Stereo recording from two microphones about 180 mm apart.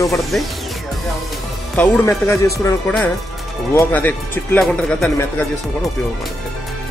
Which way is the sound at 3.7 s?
10° left (ahead or behind).